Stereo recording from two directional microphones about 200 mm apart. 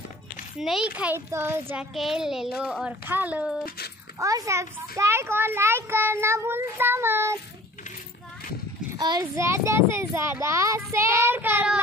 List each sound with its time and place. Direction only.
0.6 s a child's voice: centre (ahead or behind)
3.6 s speech: 50° left (ahead or behind)
4.2 s a child's voice: 15° right (ahead or behind)
8.9 s a child's voice: 20° right (ahead or behind)